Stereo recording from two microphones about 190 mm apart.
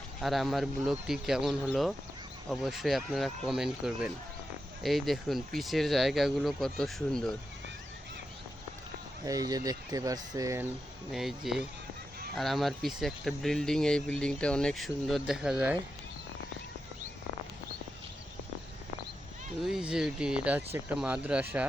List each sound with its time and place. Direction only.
0.2 s speech: centre (ahead or behind)
9.2 s speech: 20° right (ahead or behind)
11.1 s speech: centre (ahead or behind)
19.6 s speech: 5° right (ahead or behind)